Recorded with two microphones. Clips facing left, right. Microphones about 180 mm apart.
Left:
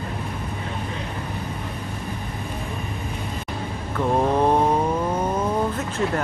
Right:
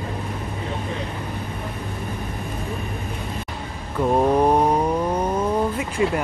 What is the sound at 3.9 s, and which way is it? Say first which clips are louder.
Mantra: right 2 dB; 15° right (ahead or behind).